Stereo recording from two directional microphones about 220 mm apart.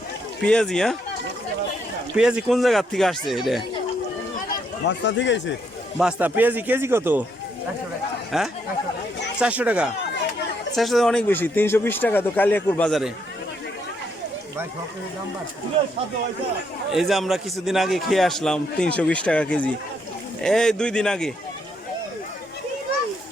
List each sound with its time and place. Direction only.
0.4 s a man's voice: 5° left (ahead or behind)
2.1 s a man's voice: 5° right (ahead or behind)
4.9 s speech: 55° left (ahead or behind)
6.0 s a man's voice: 5° right (ahead or behind)
8.3 s a man's voice: centre (ahead or behind)
16.9 s a man's voice: centre (ahead or behind)